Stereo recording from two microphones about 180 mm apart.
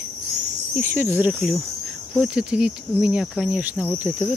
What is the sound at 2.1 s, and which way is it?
Cricket, 5° right (ahead or behind).